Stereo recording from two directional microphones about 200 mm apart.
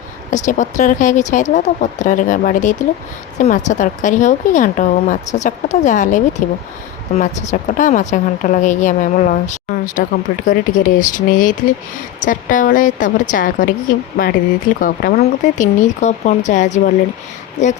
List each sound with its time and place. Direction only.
0.3 s a woman's voice: 40° left (ahead or behind)
14.8 s a woman's voice: 45° left (ahead or behind)